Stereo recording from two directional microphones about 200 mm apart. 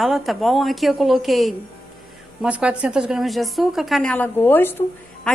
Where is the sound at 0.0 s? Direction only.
Centre (ahead or behind).